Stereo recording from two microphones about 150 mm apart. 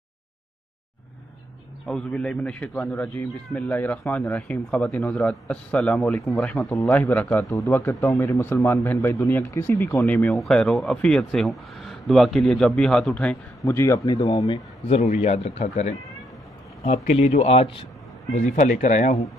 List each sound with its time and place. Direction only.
1.9 s a man's voice: 5° left (ahead or behind)
6.4 s a man's voice: 15° left (ahead or behind)
13.7 s speech: 20° left (ahead or behind)
15.2 s speech: 45° left (ahead or behind)
16.8 s speech: 45° left (ahead or behind)
18.3 s speech: 55° left (ahead or behind)